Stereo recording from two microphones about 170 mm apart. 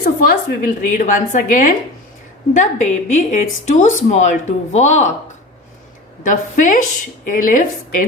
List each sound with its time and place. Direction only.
0.0 s speech: 60° left (ahead or behind)
6.2 s speech: 50° left (ahead or behind)